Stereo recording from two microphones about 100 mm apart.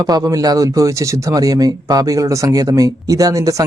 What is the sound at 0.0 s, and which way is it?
Speech, 40° right (ahead or behind).